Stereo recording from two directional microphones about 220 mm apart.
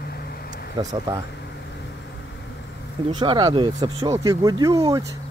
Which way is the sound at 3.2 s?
20° right (ahead or behind).